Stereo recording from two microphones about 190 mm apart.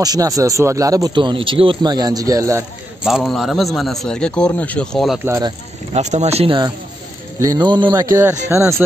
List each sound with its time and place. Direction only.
0.0 s speech: 20° right (ahead or behind)
3.0 s a man's voice: centre (ahead or behind)
5.2 s speech: 15° right (ahead or behind)
5.9 s speech: 35° right (ahead or behind); by 8.8 s 15° right (ahead or behind)